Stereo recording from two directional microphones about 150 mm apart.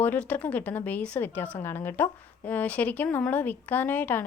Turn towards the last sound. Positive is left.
turn(degrees=10)  # may be behind; listen again after turning